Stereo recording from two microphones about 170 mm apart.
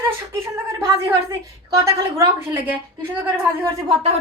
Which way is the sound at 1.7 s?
15° right (ahead or behind).